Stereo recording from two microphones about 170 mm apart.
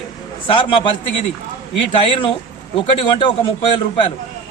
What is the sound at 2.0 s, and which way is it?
A man's voice, 30° left (ahead or behind).